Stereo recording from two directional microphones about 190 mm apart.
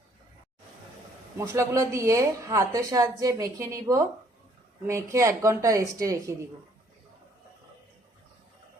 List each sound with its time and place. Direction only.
1.4 s speech: 15° right (ahead or behind)